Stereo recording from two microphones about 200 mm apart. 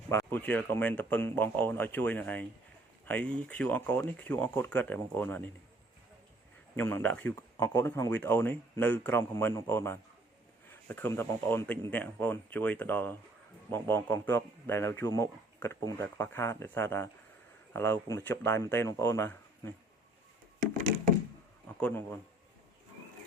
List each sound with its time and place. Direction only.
0.1 s a man's voice: 10° left (ahead or behind)
6.7 s a man's voice: 10° left (ahead or behind)
20.6 s wood: 40° right (ahead or behind)
21.8 s speech: 10° left (ahead or behind)